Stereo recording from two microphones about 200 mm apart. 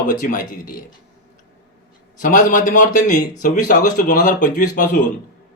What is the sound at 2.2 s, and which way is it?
A man's voice, 40° left (ahead or behind).